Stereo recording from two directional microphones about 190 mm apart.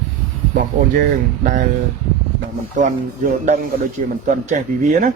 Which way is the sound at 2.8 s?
40° right (ahead or behind).